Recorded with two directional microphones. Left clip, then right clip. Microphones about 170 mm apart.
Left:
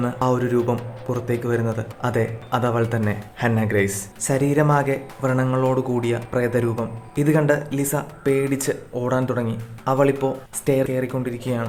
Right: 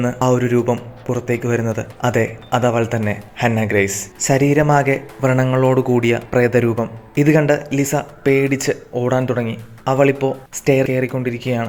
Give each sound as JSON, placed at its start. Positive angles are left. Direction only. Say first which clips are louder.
{"t": 0.0, "sound": "speech", "louder": "right 4 dB", "side_deg": -20}